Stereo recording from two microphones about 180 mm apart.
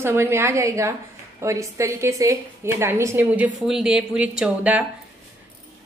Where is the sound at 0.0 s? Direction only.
15° right (ahead or behind).